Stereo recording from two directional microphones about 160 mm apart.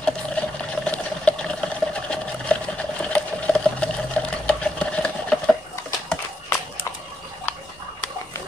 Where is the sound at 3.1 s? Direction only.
5° left (ahead or behind).